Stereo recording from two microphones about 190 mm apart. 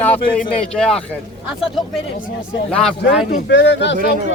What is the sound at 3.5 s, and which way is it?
Speech, 70° left (ahead or behind).